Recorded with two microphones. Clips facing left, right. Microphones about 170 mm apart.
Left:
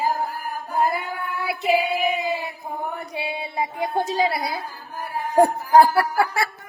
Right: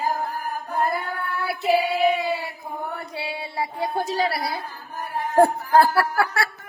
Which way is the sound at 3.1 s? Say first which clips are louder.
Left 2 dB; 20° left (ahead or behind).